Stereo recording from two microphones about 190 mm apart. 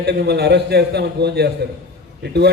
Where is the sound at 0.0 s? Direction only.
60° right (ahead or behind).